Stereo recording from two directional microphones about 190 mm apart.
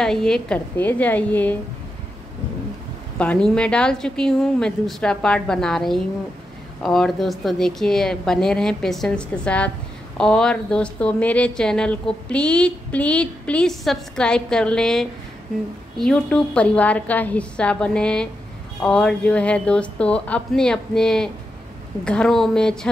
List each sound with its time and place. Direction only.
0.0 s a woman's voice: 5° left (ahead or behind)
3.2 s speech: 5° left (ahead or behind)